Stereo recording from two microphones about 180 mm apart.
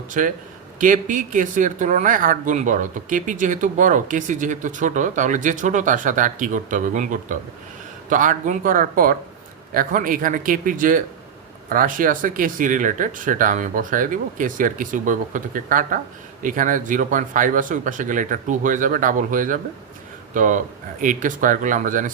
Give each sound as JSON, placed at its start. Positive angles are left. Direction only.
{"t": 0.1, "sound": "speech", "side_deg": -45}